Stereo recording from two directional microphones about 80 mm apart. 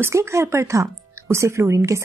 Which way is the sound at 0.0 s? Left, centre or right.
Right.